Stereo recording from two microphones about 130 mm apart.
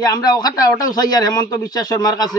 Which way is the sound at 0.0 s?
30° left (ahead or behind).